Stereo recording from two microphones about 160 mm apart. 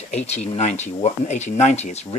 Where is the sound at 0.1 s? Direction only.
45° left (ahead or behind).